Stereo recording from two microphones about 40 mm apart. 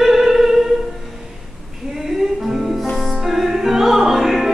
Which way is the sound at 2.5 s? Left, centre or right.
Centre.